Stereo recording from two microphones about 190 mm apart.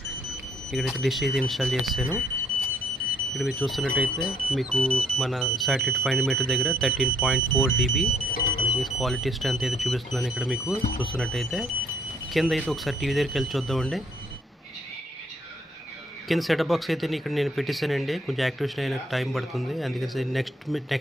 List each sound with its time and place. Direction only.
0.7 s speech: centre (ahead or behind)
3.3 s speech: centre (ahead or behind)
16.3 s speech: centre (ahead or behind)